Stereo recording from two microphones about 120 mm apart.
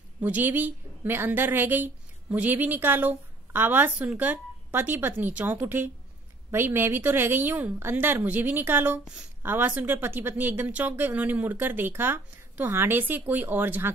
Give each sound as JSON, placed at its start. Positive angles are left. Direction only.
{"t": 0.2, "sound": "speech", "side_deg": -15}